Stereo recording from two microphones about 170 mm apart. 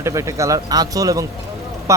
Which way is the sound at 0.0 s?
15° right (ahead or behind).